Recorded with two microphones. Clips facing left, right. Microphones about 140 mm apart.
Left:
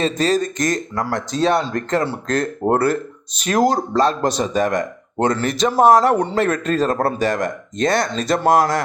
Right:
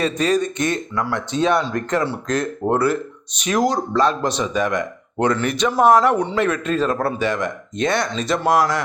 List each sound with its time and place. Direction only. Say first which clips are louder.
0.0 s speech: left 1 dB; 35° left (ahead or behind)